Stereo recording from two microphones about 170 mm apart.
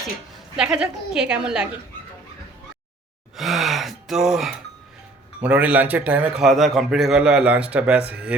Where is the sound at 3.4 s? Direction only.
Centre (ahead or behind).